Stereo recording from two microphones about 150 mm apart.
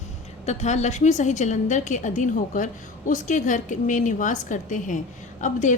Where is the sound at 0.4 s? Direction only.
50° left (ahead or behind).